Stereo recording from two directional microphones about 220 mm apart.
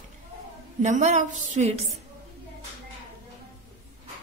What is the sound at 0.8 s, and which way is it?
Speech, 30° right (ahead or behind).